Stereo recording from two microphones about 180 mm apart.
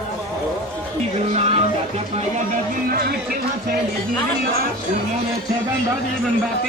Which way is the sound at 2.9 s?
55° right (ahead or behind).